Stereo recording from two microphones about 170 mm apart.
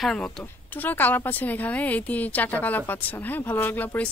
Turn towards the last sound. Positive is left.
turn(degrees=10)  # may be behind; listen again after turning